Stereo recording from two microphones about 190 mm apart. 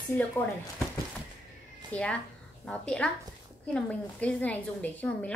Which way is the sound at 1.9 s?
5° left (ahead or behind).